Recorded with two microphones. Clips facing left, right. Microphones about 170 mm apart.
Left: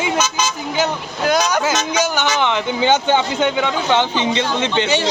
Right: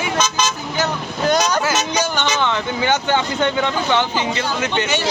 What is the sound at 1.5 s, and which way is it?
Speech, 15° left (ahead or behind).